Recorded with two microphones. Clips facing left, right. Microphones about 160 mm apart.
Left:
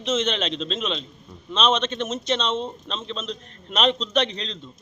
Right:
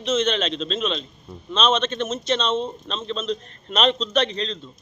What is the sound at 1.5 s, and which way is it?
Speech, 15° left (ahead or behind).